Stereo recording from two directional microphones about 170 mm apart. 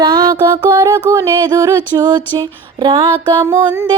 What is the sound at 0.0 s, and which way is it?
Music, 25° right (ahead or behind).